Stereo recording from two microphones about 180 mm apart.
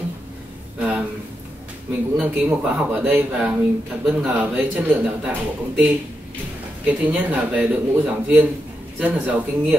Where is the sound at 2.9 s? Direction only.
5° right (ahead or behind).